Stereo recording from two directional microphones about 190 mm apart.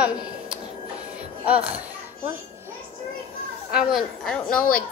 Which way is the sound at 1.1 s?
5° right (ahead or behind).